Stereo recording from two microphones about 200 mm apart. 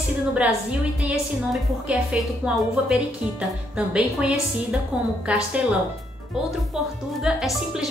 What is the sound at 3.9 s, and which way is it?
A woman's voice, 5° right (ahead or behind).